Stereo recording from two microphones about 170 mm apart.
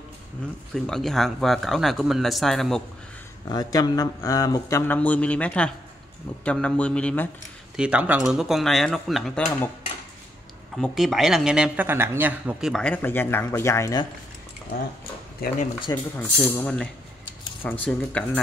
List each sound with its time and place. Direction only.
0.7 s speech: 5° left (ahead or behind)
3.4 s speech: 25° left (ahead or behind); by 7.2 s 5° left (ahead or behind)
7.7 s speech: 5° right (ahead or behind)
10.8 s speech: centre (ahead or behind); by 14.0 s 20° left (ahead or behind)
15.4 s speech: 60° left (ahead or behind)
15.9 s speech: 10° left (ahead or behind)